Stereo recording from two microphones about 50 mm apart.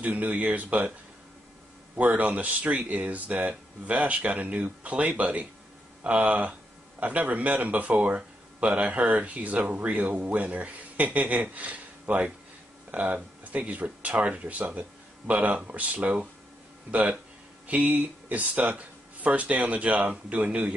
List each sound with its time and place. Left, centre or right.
0.0 s speech: right
2.0 s speech: right